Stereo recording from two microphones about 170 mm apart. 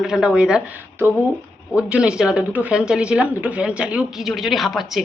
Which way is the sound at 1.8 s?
5° right (ahead or behind).